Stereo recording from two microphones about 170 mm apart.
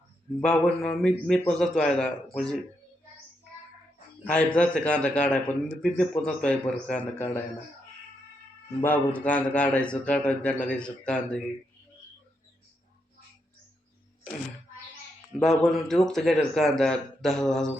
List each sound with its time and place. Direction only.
0.3 s a man's voice: 5° left (ahead or behind)
4.2 s a man's voice: 10° left (ahead or behind)
8.8 s a man's voice: 10° left (ahead or behind)
15.4 s a man's voice: centre (ahead or behind)